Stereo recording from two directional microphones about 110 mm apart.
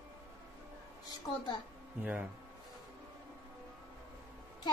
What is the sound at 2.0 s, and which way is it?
Speech, 15° right (ahead or behind).